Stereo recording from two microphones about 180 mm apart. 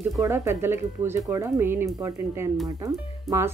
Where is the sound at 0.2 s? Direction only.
15° right (ahead or behind).